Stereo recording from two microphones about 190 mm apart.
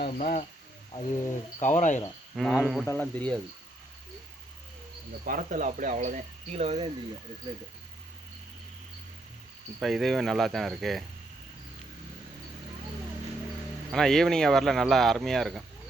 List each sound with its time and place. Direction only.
0.0 s speech: 55° left (ahead or behind)
1.6 s speech: 40° left (ahead or behind)
2.3 s speech: 5° right (ahead or behind)
2.8 s cricket: 10° left (ahead or behind)
5.2 s speech: 45° right (ahead or behind)
9.8 s speech: centre (ahead or behind)
13.9 s speech: centre (ahead or behind)